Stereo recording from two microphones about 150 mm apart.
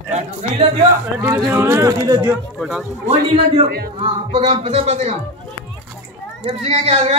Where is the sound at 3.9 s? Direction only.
35° right (ahead or behind).